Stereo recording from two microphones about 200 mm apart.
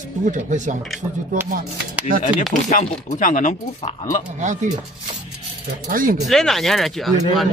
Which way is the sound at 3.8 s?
20° left (ahead or behind).